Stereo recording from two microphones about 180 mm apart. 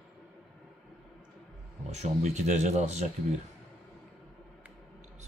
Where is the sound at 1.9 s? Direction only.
40° right (ahead or behind).